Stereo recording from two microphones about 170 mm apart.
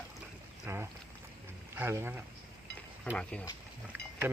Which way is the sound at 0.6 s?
15° right (ahead or behind).